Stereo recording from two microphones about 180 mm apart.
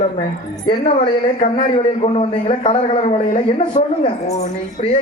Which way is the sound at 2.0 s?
35° left (ahead or behind).